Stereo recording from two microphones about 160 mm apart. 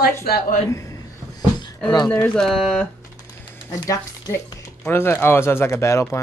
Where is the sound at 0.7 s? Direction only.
20° left (ahead or behind).